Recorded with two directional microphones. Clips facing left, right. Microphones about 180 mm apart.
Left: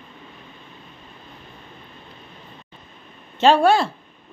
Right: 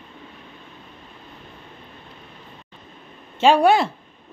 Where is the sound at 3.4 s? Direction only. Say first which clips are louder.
Even; 15° right (ahead or behind).